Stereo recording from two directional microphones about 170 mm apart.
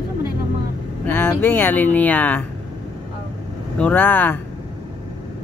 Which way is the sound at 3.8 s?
10° left (ahead or behind).